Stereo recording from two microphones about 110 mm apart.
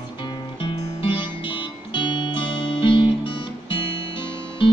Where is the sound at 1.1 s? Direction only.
45° left (ahead or behind).